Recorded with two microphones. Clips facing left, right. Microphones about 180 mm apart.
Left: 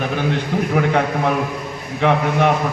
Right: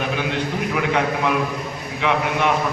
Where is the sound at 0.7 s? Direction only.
45° left (ahead or behind).